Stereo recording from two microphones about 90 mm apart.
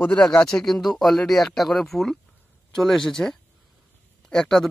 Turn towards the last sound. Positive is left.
turn(degrees=5)  # may be behind; listen again after turning